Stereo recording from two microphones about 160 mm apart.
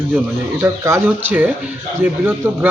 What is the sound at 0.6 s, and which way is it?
Speech, 15° right (ahead or behind).